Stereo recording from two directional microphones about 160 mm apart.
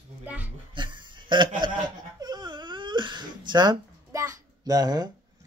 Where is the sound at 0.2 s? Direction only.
10° right (ahead or behind).